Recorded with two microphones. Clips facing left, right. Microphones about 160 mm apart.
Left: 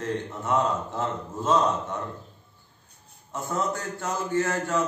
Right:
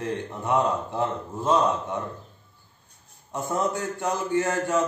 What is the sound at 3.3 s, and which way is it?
A man's voice, 15° right (ahead or behind).